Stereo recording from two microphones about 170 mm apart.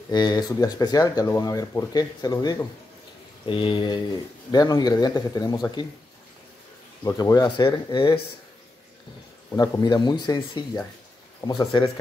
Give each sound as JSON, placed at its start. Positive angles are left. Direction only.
{"t": 0.1, "sound": "speech", "side_deg": 25}
{"t": 7.1, "sound": "speech", "side_deg": 20}
{"t": 9.6, "sound": "speech", "side_deg": 25}